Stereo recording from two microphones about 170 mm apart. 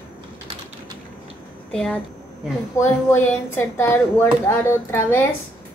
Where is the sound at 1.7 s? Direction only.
5° left (ahead or behind).